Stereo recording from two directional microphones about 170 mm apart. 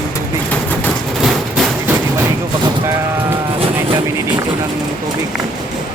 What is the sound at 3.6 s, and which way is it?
Vehicle, 35° right (ahead or behind).